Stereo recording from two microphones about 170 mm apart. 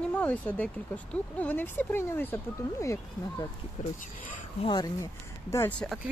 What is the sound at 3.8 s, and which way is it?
Speech, 45° left (ahead or behind).